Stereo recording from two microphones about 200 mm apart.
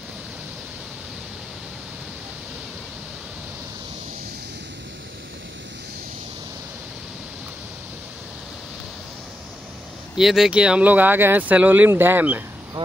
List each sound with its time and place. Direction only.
10.1 s speech: centre (ahead or behind)